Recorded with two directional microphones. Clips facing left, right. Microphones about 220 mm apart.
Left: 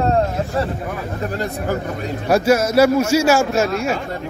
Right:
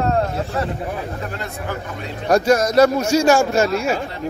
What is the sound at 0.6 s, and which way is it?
Speech, 30° left (ahead or behind).